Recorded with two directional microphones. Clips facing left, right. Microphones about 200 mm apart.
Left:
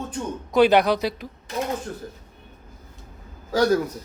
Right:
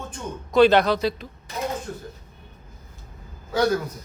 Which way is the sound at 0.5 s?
15° left (ahead or behind).